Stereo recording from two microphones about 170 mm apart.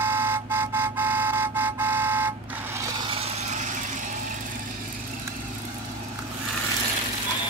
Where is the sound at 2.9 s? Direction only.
30° right (ahead or behind); by 4.0 s 45° right (ahead or behind).